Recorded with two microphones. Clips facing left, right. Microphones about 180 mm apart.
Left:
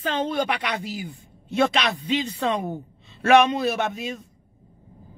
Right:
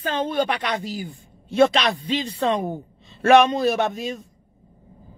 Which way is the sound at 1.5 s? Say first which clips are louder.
Right 4 dB; 10° left (ahead or behind).